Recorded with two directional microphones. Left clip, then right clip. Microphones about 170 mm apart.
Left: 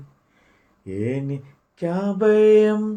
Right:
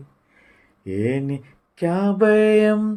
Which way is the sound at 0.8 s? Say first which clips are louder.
Right 3 dB; 45° right (ahead or behind).